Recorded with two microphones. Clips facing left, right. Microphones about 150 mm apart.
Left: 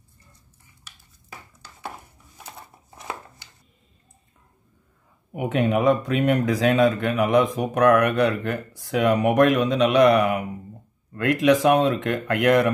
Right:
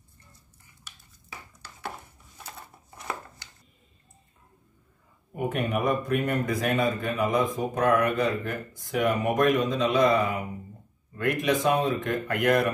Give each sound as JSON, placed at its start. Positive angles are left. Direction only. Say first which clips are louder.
{"t": 5.3, "sound": "speech", "louder": "left 6 dB", "side_deg": 85}